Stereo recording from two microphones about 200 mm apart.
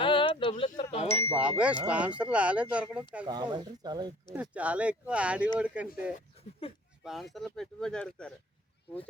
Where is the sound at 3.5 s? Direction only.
20° right (ahead or behind).